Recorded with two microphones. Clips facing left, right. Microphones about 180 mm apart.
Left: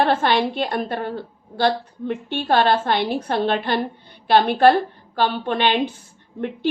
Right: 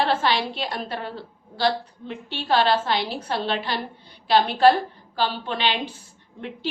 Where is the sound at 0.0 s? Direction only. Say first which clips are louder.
Left 4 dB; 50° left (ahead or behind).